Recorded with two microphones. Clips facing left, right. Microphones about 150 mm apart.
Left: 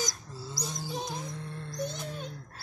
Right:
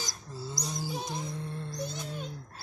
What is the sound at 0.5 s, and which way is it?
Music, centre (ahead or behind).